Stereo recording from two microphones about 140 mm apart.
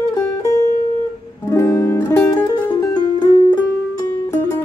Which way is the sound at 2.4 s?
30° left (ahead or behind).